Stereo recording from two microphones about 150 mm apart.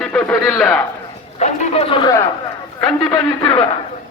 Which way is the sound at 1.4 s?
45° left (ahead or behind).